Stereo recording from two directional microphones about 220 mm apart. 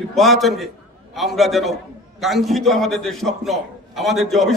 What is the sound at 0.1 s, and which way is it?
A man's voice, centre (ahead or behind).